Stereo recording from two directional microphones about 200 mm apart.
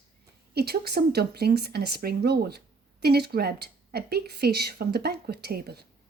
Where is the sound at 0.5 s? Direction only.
55° right (ahead or behind).